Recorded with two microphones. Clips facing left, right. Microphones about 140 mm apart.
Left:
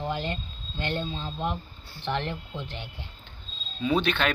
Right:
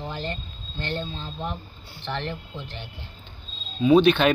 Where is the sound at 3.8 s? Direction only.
15° right (ahead or behind).